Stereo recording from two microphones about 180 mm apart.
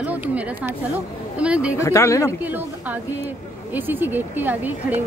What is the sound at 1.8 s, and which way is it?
Speech, 15° left (ahead or behind).